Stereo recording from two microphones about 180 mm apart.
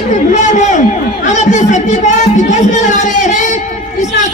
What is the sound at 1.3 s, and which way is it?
Music, 40° left (ahead or behind).